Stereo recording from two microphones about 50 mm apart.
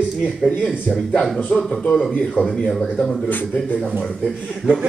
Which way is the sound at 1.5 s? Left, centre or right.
Left.